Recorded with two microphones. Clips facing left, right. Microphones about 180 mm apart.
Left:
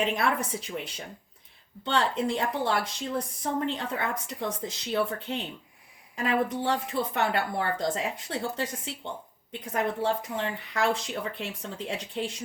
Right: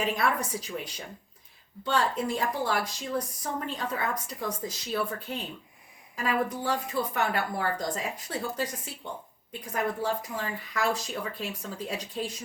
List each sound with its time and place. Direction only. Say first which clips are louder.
0.0 s speech: left 1 dB; 25° left (ahead or behind)
1.8 s speech: left 1 dB; 25° left (ahead or behind)